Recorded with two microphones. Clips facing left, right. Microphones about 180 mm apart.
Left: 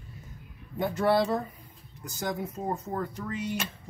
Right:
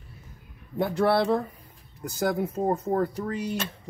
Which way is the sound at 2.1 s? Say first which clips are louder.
Right 7 dB; 35° right (ahead or behind).